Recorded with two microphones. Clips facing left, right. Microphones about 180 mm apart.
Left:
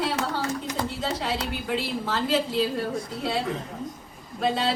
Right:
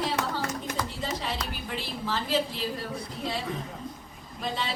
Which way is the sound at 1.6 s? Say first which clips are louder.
Left 6 dB; 80° left.